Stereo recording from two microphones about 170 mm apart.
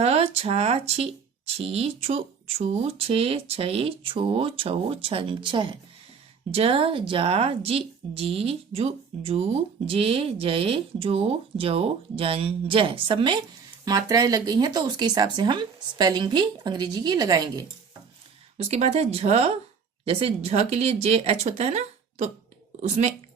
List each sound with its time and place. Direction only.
0.0 s a woman's voice: 40° right (ahead or behind); by 17.7 s 20° right (ahead or behind)
18.5 s a woman's voice: 40° right (ahead or behind)